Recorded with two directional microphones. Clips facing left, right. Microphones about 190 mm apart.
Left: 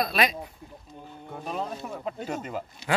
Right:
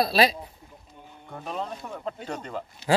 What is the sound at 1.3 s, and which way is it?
Speech, 5° left (ahead or behind).